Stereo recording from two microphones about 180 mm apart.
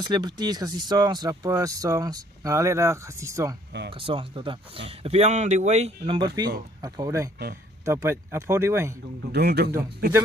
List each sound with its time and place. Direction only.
0.0 s speech: 25° right (ahead or behind)
4.0 s speech: 30° right (ahead or behind)
9.3 s speech: 65° right (ahead or behind)